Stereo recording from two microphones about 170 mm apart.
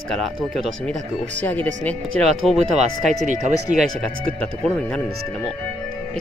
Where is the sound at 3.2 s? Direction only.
45° right (ahead or behind).